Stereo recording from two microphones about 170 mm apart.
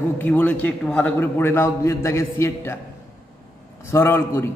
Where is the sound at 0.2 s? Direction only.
10° left (ahead or behind).